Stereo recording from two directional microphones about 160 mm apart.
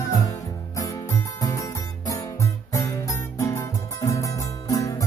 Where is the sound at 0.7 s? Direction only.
20° left (ahead or behind).